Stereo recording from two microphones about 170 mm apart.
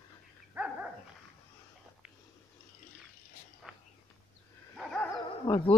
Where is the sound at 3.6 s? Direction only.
Centre (ahead or behind).